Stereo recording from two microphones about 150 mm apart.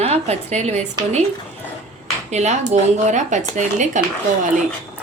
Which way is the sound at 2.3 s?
50° right (ahead or behind).